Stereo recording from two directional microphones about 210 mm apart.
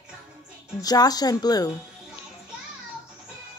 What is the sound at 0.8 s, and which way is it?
Speech, 20° left (ahead or behind).